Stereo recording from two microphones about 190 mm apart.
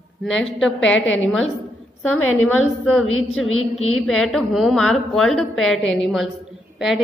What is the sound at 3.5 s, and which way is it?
Speech, 90° left.